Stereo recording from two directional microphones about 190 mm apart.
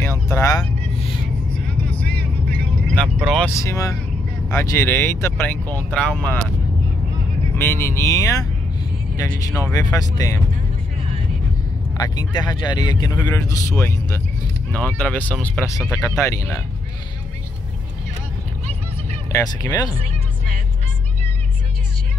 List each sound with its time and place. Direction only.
0.3 s speech: 15° left (ahead or behind)
1.9 s vehicle: 5° left (ahead or behind)
3.2 s speech: centre (ahead or behind)
3.5 s speech: 15° left (ahead or behind)
7.5 s a man's voice: 10° left (ahead or behind)
12.0 s a man's voice: 20° left (ahead or behind)
15.6 s speech: 15° left (ahead or behind)
19.3 s a man's voice: 20° left (ahead or behind)